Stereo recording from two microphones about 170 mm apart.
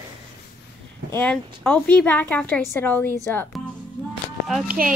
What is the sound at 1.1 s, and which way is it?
A woman's voice, 10° left (ahead or behind).